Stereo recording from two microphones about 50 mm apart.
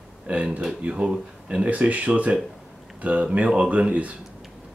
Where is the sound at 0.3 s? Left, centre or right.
Right.